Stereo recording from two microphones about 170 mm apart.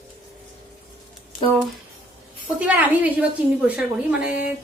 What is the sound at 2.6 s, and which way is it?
A woman's voice, 10° right (ahead or behind).